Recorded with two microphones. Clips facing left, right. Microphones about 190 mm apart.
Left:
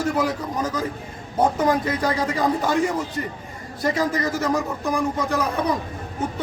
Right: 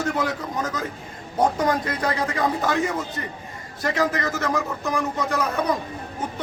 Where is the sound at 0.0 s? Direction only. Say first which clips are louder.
Left 2 dB; 10° left (ahead or behind).